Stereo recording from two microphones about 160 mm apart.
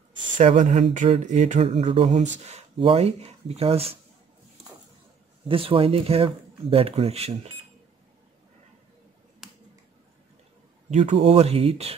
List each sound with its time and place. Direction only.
0.4 s speech: 50° right (ahead or behind)
5.5 s speech: 35° right (ahead or behind)
10.9 s speech: 45° right (ahead or behind)